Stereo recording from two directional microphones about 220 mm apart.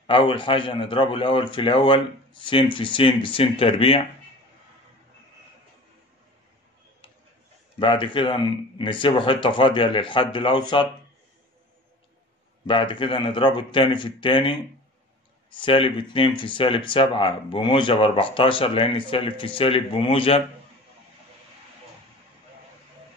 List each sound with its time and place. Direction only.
0.0 s speech: 25° left (ahead or behind)
7.8 s speech: 20° left (ahead or behind)
12.6 s speech: 20° left (ahead or behind)